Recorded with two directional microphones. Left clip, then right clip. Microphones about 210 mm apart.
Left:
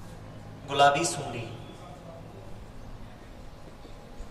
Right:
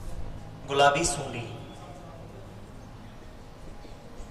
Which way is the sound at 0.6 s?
15° left (ahead or behind).